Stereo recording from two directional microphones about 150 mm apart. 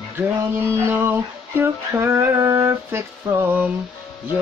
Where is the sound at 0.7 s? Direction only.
15° right (ahead or behind).